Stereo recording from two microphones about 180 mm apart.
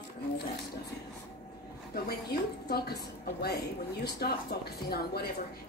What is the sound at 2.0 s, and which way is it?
Speech, 60° left (ahead or behind).